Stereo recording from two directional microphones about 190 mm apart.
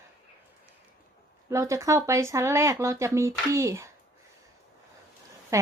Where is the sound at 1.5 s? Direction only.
15° right (ahead or behind).